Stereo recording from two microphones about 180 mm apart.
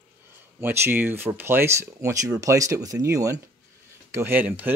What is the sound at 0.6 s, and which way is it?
Speech, 10° right (ahead or behind).